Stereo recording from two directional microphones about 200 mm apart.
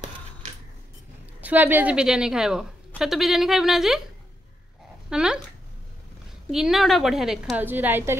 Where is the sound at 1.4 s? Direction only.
10° right (ahead or behind).